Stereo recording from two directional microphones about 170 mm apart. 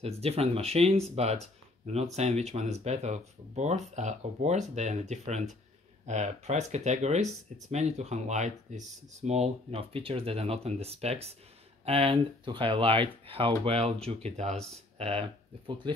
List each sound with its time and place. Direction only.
0.0 s speech: 35° right (ahead or behind)